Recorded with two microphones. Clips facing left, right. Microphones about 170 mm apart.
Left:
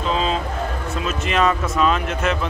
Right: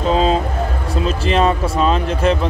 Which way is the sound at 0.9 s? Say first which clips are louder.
Right 5 dB; 30° right (ahead or behind).